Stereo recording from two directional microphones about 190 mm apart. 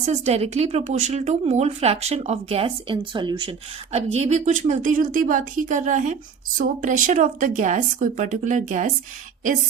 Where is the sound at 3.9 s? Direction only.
35° right (ahead or behind).